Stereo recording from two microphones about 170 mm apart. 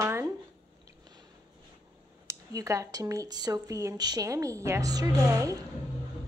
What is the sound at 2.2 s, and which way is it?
Speech, 20° right (ahead or behind).